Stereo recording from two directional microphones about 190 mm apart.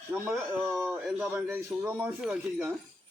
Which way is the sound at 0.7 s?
Centre (ahead or behind).